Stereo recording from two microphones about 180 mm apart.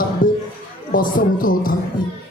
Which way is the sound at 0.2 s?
50° left (ahead or behind).